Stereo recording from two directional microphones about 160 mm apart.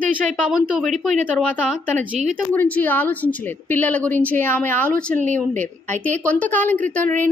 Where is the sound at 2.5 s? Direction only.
10° left (ahead or behind).